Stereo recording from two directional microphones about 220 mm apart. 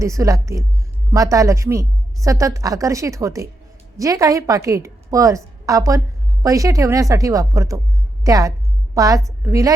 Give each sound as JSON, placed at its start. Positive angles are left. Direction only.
{"t": 0.0, "sound": "a woman's voice", "side_deg": -15}